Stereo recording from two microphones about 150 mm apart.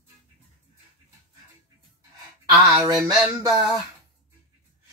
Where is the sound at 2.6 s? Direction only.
25° right (ahead or behind).